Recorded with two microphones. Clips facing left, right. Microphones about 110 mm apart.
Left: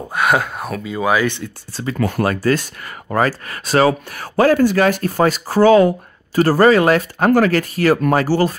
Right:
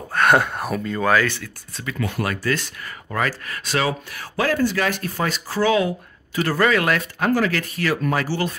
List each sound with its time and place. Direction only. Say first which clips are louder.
0.1 s speech: even; 5° left (ahead or behind)
0.9 s speech: left 3 dB; 15° left (ahead or behind)
1.7 s speech: left 7 dB; 35° left (ahead or behind)
7.2 s speech: left 6 dB; 50° left (ahead or behind)